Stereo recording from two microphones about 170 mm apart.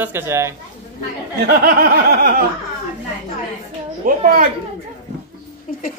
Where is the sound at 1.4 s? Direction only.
65° right (ahead or behind).